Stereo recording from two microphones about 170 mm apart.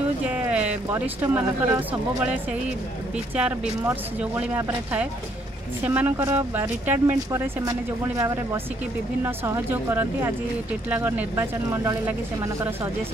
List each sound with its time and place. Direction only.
0.3 s music: 5° right (ahead or behind)
1.2 s speech: 10° right (ahead or behind)
3.3 s speech: 5° right (ahead or behind)
9.2 s speech: 15° right (ahead or behind)